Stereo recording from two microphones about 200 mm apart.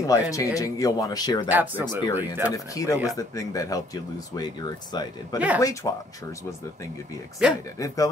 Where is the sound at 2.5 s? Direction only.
15° left (ahead or behind).